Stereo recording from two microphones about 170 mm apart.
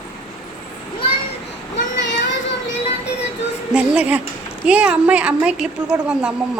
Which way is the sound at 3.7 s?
5° right (ahead or behind).